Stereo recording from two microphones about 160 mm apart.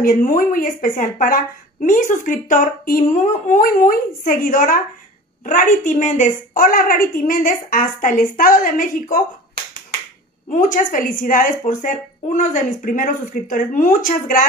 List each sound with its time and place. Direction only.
0.0 s a woman's voice: 55° left (ahead or behind)
10.5 s a woman's voice: 55° left (ahead or behind)